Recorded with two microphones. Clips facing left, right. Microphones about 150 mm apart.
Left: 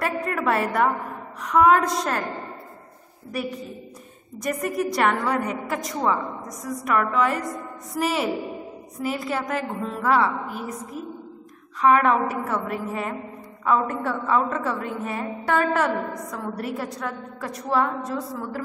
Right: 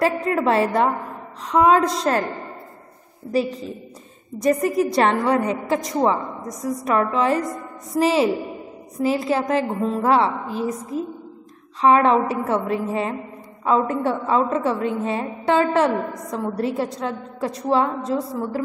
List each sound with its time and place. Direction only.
0.0 s a sound: 25° right (ahead or behind)
1.4 s a woman's voice: 25° right (ahead or behind)
4.5 s a woman's voice: 25° right (ahead or behind)